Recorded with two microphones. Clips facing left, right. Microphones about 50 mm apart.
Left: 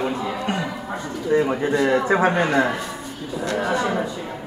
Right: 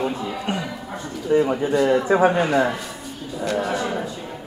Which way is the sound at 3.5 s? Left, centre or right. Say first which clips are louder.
Left 3 dB; centre.